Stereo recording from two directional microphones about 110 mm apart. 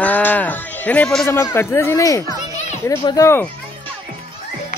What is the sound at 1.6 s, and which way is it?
Speech, 25° left (ahead or behind).